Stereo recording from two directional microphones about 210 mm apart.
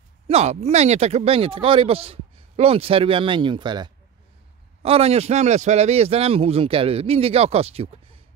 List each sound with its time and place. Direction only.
0.3 s speech: 30° right (ahead or behind)